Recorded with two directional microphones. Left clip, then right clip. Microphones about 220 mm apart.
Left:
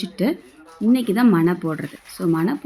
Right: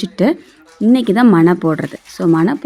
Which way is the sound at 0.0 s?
20° right (ahead or behind).